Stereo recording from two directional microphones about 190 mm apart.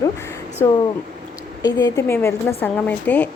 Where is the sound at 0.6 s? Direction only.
15° left (ahead or behind).